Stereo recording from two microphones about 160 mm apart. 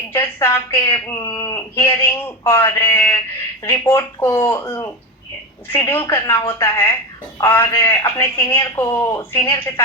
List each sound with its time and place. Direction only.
0.2 s speech: 15° left (ahead or behind)